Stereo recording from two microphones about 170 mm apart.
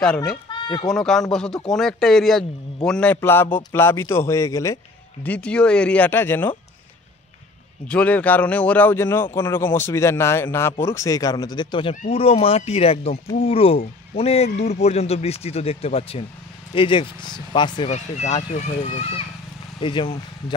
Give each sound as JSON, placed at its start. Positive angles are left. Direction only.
{"t": 0.0, "sound": "a man's voice", "side_deg": 5}
{"t": 7.9, "sound": "a man's voice", "side_deg": 10}
{"t": 17.8, "sound": "speech", "side_deg": 45}